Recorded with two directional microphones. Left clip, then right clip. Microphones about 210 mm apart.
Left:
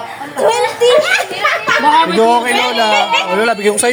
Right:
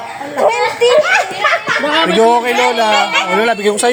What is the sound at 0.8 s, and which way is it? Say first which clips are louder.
Speech: right 1 dB; 30° left (ahead or behind).